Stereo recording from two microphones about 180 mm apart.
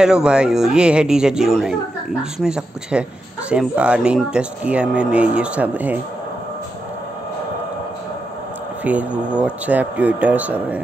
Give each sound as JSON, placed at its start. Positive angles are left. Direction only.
{"t": 0.0, "sound": "speech", "side_deg": -5}
{"t": 8.8, "sound": "speech", "side_deg": -5}